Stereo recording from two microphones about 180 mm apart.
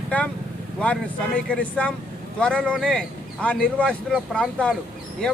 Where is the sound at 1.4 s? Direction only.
5° left (ahead or behind).